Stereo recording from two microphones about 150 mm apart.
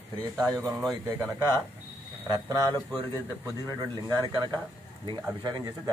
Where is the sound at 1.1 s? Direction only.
25° right (ahead or behind).